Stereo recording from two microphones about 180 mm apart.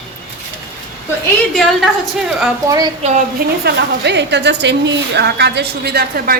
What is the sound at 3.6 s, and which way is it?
A woman's voice, 70° right (ahead or behind).